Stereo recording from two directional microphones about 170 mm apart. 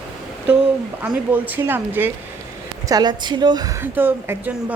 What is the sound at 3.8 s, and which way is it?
Speech, 10° right (ahead or behind).